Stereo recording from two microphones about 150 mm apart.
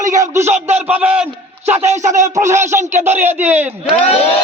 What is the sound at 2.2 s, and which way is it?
Speech, 20° right (ahead or behind).